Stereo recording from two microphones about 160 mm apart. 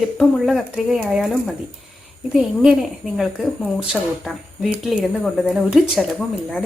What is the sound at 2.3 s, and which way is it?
Speech, 5° right (ahead or behind).